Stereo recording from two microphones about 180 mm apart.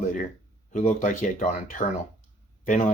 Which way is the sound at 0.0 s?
45° left (ahead or behind).